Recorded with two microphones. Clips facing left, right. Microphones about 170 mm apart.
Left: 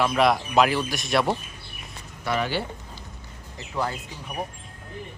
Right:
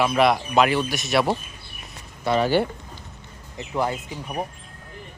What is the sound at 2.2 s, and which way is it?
Speech, 30° right (ahead or behind).